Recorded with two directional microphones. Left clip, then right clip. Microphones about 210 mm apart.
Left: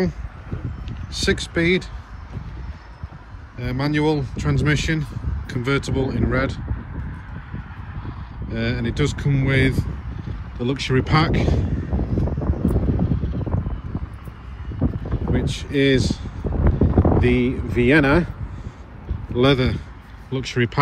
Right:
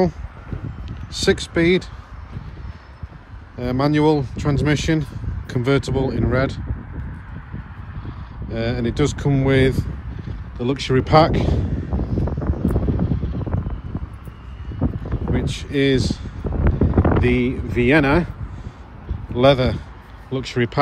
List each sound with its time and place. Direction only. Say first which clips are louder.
0.8 s speech: right 3 dB; 15° right (ahead or behind)
3.5 s speech: right 4 dB; 10° right (ahead or behind)
8.5 s speech: right 2 dB; 5° right (ahead or behind)
11.9 s wind noise: even; 25° left (ahead or behind)
13.3 s a sound: even; 25° left (ahead or behind)
15.3 s speech: even; 5° right (ahead or behind)
16.7 s boat: even; 5° right (ahead or behind)
17.2 s speech: even; 10° right (ahead or behind)
19.3 s speech: right 3 dB; 10° right (ahead or behind)